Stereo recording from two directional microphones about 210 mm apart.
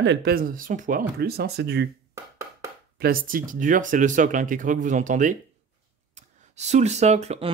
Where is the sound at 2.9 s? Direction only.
45° right (ahead or behind).